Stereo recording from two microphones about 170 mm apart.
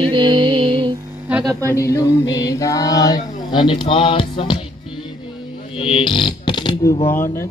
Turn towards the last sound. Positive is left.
turn(degrees=15)  # may be behind; listen again after turning